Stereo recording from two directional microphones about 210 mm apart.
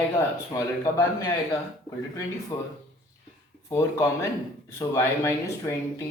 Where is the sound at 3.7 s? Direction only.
15° left (ahead or behind).